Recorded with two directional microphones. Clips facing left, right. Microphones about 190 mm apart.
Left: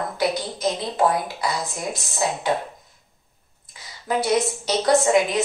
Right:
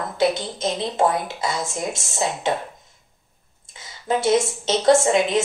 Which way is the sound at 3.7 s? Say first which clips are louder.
Right 2 dB; 25° right (ahead or behind).